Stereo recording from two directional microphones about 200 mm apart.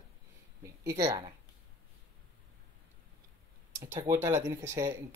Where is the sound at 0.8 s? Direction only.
15° right (ahead or behind).